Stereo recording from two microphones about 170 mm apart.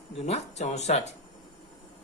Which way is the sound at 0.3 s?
40° left (ahead or behind).